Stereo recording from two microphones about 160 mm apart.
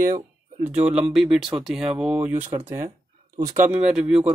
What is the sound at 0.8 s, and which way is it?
Speech, 5° right (ahead or behind).